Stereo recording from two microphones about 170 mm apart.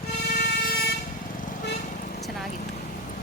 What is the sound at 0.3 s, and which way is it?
Vehicle, 65° left (ahead or behind).